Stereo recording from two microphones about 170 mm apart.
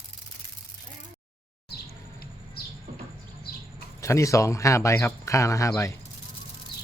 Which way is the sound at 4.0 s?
15° left (ahead or behind).